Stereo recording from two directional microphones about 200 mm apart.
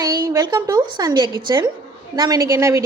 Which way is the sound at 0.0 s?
15° right (ahead or behind).